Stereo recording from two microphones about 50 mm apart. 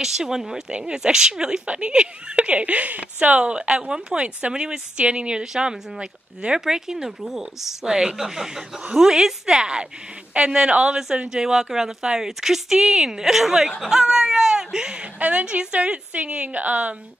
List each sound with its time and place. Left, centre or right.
0.0 s a woman's voice: centre
0.7 s a woman's voice: right
0.9 s a woman's voice: centre; by 3.3 s right
3.3 s a woman's voice: centre
7.8 s a woman's voice: centre
15.1 s a woman's voice: right